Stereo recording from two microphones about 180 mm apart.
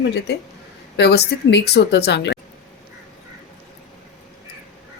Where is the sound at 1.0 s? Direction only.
70° left (ahead or behind).